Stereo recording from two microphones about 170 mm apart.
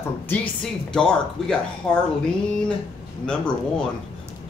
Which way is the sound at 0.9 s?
5° left (ahead or behind).